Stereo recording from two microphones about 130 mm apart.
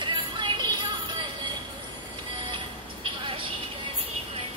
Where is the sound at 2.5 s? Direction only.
40° right (ahead or behind).